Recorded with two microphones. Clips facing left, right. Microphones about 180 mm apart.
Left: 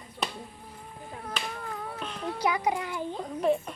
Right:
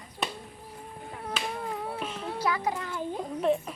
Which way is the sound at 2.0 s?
5° right (ahead or behind).